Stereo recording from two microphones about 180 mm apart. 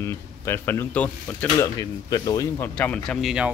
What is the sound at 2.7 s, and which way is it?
Speech, 5° left (ahead or behind).